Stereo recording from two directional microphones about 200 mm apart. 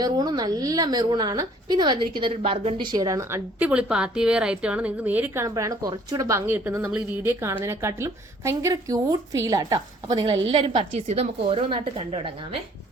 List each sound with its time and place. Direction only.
0.0 s a woman's voice: 20° right (ahead or behind)
10.4 s a woman's voice: 35° right (ahead or behind)